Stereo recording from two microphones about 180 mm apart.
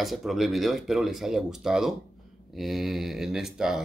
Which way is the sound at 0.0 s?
Centre (ahead or behind).